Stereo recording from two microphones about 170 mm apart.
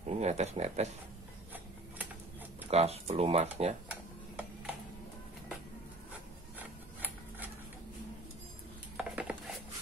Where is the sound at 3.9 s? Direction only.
10° right (ahead or behind).